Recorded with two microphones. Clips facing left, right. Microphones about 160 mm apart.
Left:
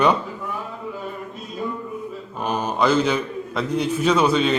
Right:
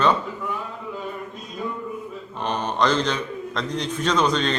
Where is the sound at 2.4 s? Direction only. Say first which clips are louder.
Left 2 dB; 5° left (ahead or behind).